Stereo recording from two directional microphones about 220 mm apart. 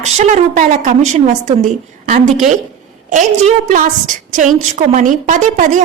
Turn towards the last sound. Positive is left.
turn(degrees=-35)  # may be behind; listen again after turning